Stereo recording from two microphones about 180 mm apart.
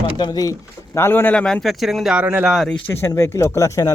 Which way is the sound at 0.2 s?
20° left (ahead or behind).